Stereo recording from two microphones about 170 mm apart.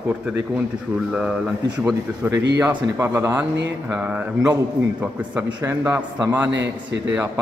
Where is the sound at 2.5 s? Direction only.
15° right (ahead or behind).